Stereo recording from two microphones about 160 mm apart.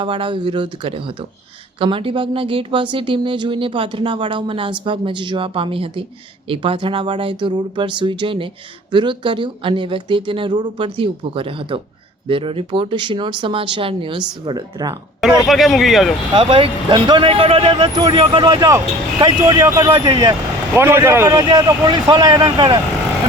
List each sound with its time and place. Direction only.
0.0 s speech: 30° right (ahead or behind)
15.4 s speech: centre (ahead or behind)
16.3 s speech: 35° right (ahead or behind); by 21.3 s 15° right (ahead or behind)
21.3 s speech: 30° right (ahead or behind)